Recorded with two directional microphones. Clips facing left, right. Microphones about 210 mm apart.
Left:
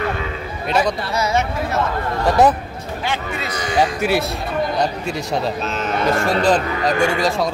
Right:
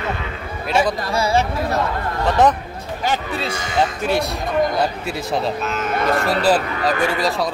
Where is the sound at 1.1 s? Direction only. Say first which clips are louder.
Right 3 dB; 30° right (ahead or behind).